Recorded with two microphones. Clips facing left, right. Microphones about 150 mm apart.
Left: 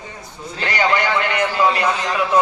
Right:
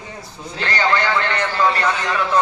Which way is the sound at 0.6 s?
15° left (ahead or behind).